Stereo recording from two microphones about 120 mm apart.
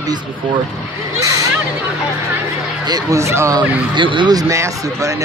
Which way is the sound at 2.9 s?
25° right (ahead or behind).